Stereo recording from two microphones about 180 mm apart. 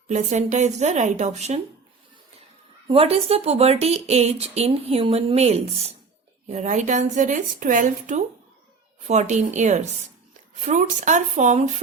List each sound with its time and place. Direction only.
0.1 s speech: 40° right (ahead or behind)
2.8 s speech: 35° right (ahead or behind)